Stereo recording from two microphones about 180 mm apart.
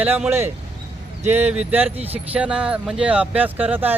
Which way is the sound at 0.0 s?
10° right (ahead or behind).